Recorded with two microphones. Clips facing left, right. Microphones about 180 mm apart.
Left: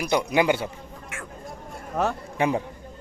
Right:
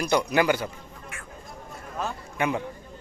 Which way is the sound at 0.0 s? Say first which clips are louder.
Left 1 dB; 20° left (ahead or behind).